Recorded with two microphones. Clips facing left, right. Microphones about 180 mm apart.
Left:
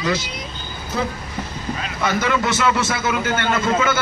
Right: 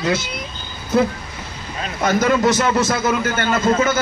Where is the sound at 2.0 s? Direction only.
40° right (ahead or behind).